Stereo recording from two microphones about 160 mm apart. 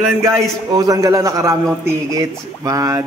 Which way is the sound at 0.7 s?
25° right (ahead or behind).